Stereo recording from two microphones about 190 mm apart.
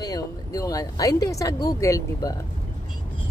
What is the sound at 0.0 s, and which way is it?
Speech, 20° left (ahead or behind).